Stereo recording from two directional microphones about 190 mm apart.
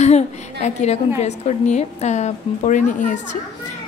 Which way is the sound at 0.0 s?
35° left (ahead or behind).